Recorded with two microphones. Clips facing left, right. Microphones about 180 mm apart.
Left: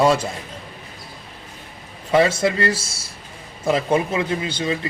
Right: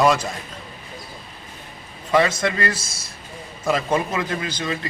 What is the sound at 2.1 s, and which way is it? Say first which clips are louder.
Speech: left 2 dB; 30° left (ahead or behind).